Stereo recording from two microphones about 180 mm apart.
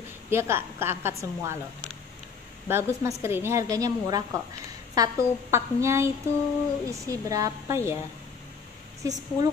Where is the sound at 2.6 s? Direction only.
15° right (ahead or behind).